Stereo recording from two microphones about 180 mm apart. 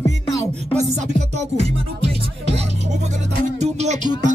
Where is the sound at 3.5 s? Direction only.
40° right (ahead or behind).